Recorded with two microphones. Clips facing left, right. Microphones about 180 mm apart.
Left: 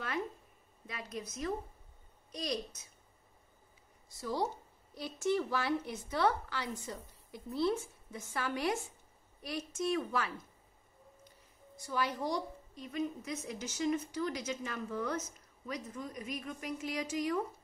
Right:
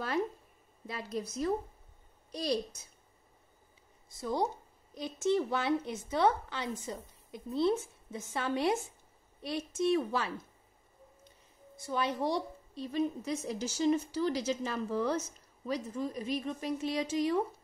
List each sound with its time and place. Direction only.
0.8 s a woman's voice: 30° right (ahead or behind)
4.2 s a woman's voice: 20° right (ahead or behind)
11.8 s a woman's voice: 25° right (ahead or behind)